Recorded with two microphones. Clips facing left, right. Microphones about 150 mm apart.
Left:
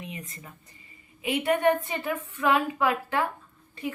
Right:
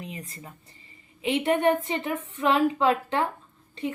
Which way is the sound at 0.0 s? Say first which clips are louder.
Right 1 dB; 35° right (ahead or behind).